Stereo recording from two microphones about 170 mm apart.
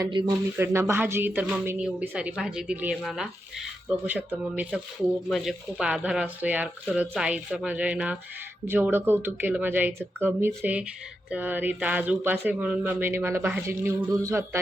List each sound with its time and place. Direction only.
0.0 s speech: 25° right (ahead or behind)
0.5 s speech: 15° right (ahead or behind)